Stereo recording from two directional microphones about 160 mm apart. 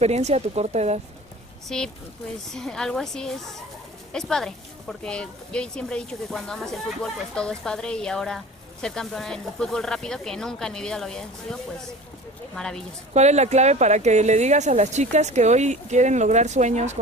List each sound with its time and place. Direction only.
0.0 s speech: 45° right (ahead or behind)
1.7 s a woman's voice: 5° left (ahead or behind)
13.1 s speech: 45° right (ahead or behind)